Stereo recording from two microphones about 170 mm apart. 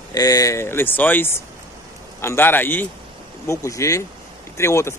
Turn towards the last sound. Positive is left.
turn(degrees=15)  # may be behind; listen again after turning